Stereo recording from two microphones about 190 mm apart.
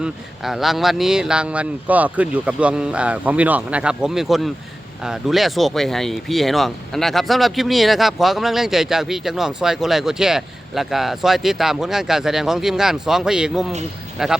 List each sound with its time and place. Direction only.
0.0 s speech: centre (ahead or behind)